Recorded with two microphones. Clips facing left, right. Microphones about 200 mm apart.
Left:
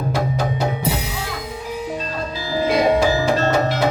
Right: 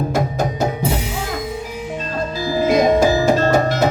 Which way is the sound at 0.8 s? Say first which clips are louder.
Right 2 dB; 40° left (ahead or behind).